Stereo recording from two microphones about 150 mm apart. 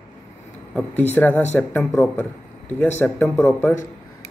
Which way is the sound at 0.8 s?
10° left (ahead or behind).